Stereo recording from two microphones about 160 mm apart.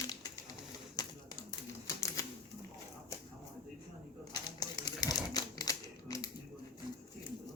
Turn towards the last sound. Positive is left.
turn(degrees=20)  # may be behind; listen again after turning